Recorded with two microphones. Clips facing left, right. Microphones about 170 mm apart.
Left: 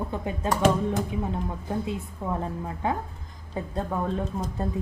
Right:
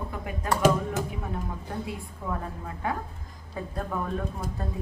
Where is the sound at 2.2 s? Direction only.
25° left (ahead or behind).